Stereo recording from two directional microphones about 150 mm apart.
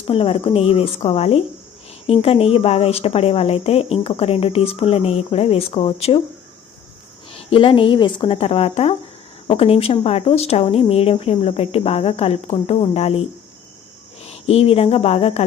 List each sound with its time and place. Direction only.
0.1 s a woman's voice: 40° left (ahead or behind)
7.3 s a woman's voice: 40° left (ahead or behind)
14.3 s speech: 45° left (ahead or behind)